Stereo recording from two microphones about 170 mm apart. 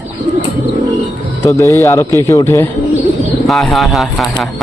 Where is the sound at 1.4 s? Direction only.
15° left (ahead or behind).